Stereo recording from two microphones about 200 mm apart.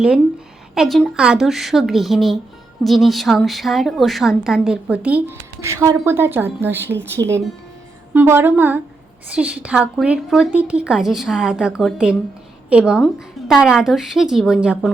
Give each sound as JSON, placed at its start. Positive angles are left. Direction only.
{"t": 0.7, "sound": "a woman's voice", "side_deg": 0}